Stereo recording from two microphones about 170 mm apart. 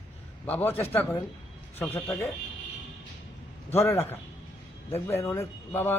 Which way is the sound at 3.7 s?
15° left (ahead or behind).